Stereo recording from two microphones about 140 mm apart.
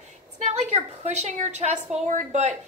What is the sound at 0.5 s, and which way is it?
A woman's voice, 50° right (ahead or behind).